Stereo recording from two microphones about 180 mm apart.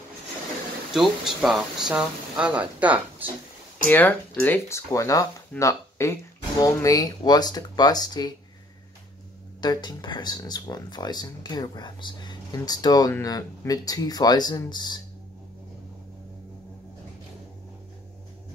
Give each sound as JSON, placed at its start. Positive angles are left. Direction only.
{"t": 0.9, "sound": "speech", "side_deg": 0}
{"t": 3.9, "sound": "speech", "side_deg": 10}
{"t": 9.6, "sound": "speech", "side_deg": 25}